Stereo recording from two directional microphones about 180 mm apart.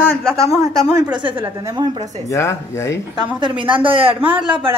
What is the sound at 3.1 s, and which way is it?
A woman's voice, 25° right (ahead or behind).